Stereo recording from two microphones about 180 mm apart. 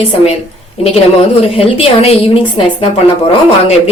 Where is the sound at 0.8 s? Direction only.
35° left (ahead or behind).